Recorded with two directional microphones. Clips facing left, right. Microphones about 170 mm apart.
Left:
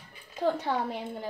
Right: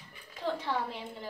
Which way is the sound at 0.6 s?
45° left (ahead or behind).